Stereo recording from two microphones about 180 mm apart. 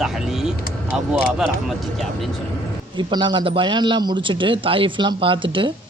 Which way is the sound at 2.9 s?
25° right (ahead or behind).